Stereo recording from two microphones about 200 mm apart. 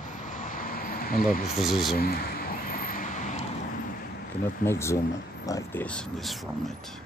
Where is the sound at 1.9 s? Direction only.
50° left (ahead or behind).